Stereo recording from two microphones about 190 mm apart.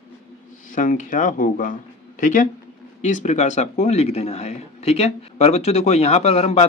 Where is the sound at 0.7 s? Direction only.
45° left (ahead or behind).